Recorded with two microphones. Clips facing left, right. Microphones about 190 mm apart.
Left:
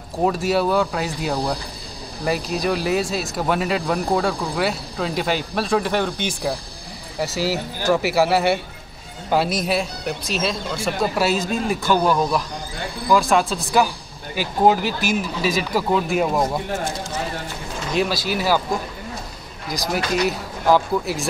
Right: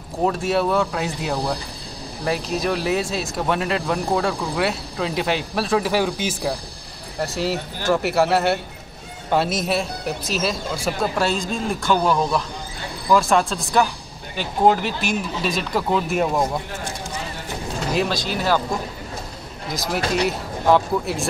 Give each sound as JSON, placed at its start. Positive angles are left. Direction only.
{"t": 0.2, "sound": "speech", "side_deg": 0}
{"t": 17.9, "sound": "speech", "side_deg": 5}
{"t": 19.7, "sound": "speech", "side_deg": 0}